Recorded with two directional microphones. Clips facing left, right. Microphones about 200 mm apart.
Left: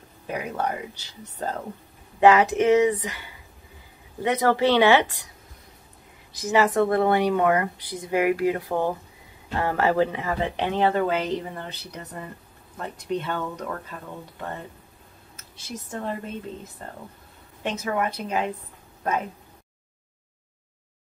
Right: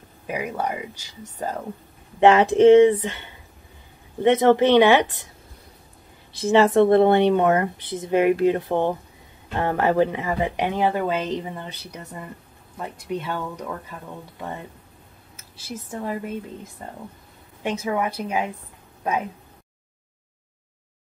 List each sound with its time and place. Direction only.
0.3 s speech: 10° right (ahead or behind)
2.1 s speech: 25° right (ahead or behind)
6.3 s speech: 25° right (ahead or behind); by 13.9 s 10° right (ahead or behind)
15.5 s speech: 5° right (ahead or behind)